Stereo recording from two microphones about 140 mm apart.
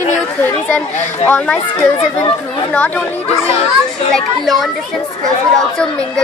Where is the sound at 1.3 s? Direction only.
10° left (ahead or behind).